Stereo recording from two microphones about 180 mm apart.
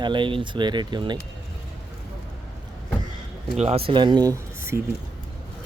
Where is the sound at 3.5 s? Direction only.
35° right (ahead or behind); by 4.8 s 15° right (ahead or behind).